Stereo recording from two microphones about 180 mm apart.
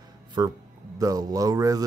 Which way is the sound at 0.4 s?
25° right (ahead or behind).